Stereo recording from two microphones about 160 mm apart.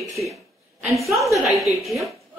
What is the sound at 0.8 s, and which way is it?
A woman's voice, centre (ahead or behind).